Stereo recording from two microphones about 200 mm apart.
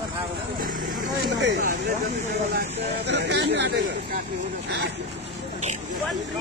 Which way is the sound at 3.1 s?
60° right (ahead or behind).